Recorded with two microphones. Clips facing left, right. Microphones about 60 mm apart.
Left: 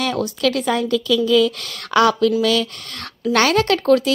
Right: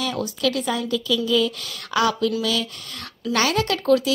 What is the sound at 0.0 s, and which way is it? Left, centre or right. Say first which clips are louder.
Speech: left 4 dB; left.